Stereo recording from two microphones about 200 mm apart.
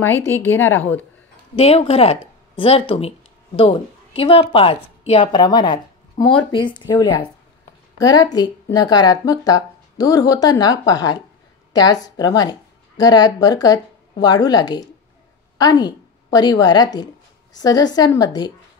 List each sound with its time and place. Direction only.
0.4 s a woman's voice: 10° left (ahead or behind)
1.5 s speech: 30° left (ahead or behind)
5.3 s a woman's voice: 20° left (ahead or behind)